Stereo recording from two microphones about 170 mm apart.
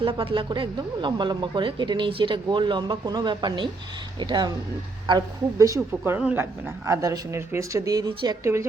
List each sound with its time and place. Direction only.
0.0 s a woman's voice: 30° right (ahead or behind)